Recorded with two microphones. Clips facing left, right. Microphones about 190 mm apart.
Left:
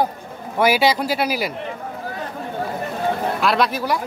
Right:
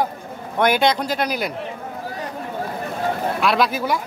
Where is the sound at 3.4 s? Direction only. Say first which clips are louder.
Right 2 dB; centre (ahead or behind).